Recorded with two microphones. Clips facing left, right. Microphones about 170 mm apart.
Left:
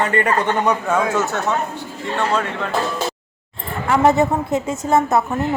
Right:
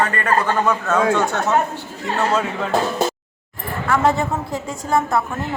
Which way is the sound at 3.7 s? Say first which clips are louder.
Left 2 dB; 20° left (ahead or behind).